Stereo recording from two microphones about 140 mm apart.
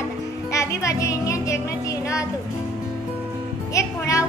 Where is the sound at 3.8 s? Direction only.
20° left (ahead or behind).